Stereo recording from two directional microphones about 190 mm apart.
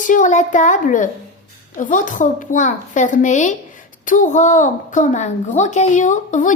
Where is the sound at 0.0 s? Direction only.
40° left (ahead or behind).